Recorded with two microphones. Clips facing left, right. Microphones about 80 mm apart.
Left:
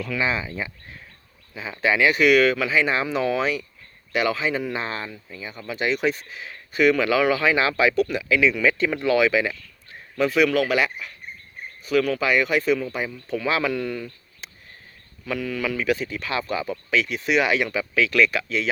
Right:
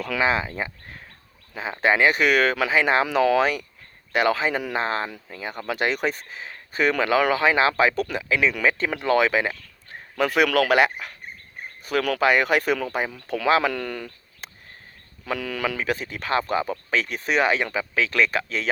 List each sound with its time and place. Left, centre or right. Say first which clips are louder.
0.2 s speech: right 4 dB; right
5.0 s speech: right 3 dB; right
10.2 s speech: even; right
15.8 s speech: left 3 dB; right